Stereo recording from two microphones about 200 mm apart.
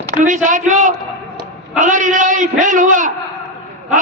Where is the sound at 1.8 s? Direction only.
40° right (ahead or behind).